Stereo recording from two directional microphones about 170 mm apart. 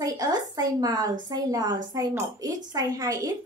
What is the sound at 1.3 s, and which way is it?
A child's voice, 25° right (ahead or behind).